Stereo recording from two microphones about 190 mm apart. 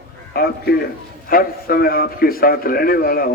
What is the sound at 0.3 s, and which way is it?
A man's voice, 55° left (ahead or behind).